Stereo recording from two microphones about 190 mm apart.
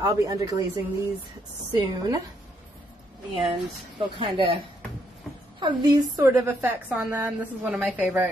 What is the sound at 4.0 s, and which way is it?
A woman's voice, 30° right (ahead or behind).